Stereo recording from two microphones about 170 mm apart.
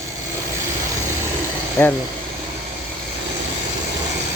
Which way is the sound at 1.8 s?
15° left (ahead or behind).